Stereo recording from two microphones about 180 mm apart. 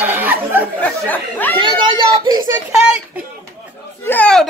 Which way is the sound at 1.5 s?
25° right (ahead or behind).